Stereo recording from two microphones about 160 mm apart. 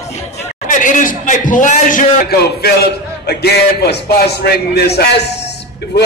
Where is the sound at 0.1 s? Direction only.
45° left (ahead or behind).